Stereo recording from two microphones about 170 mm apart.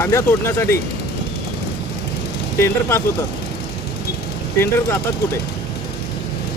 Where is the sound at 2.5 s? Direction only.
15° left (ahead or behind).